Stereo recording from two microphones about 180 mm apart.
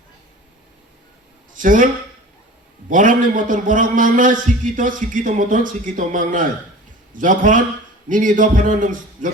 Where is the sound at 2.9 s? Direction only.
45° right (ahead or behind).